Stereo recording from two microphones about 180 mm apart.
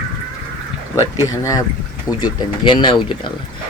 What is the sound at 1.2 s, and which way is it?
Speech, 15° left (ahead or behind).